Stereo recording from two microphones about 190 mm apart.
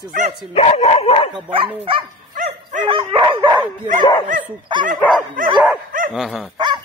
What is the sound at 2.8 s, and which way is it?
Speech, 25° right (ahead or behind).